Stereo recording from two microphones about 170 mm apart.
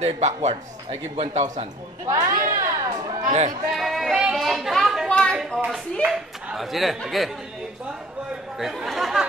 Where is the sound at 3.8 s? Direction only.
Centre (ahead or behind).